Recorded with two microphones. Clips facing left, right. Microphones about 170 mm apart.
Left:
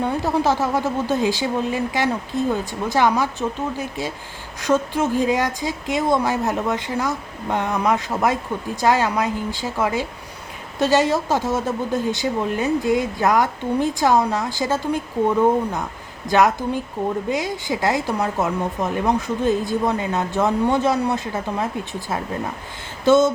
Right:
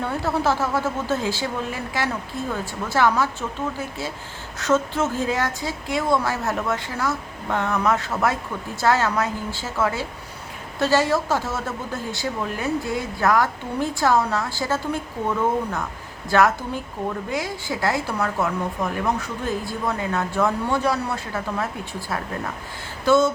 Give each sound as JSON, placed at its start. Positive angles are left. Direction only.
{"t": 0.0, "sound": "a woman's voice", "side_deg": 15}
{"t": 23.0, "sound": "speech", "side_deg": 20}